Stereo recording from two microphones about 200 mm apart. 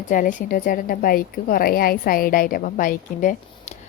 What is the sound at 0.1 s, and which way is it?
A woman's voice, 40° left (ahead or behind).